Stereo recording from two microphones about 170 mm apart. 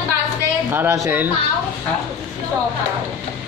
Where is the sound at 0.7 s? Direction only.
10° right (ahead or behind).